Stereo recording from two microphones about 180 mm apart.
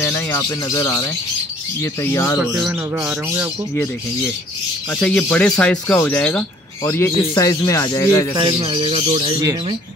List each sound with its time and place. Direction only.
0.0 s speech: 15° left (ahead or behind)
2.4 s speech: 10° right (ahead or behind)
4.9 s speech: 5° left (ahead or behind)
8.4 s speech: 30° right (ahead or behind)